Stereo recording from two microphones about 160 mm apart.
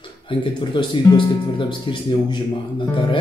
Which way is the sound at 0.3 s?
30° left (ahead or behind).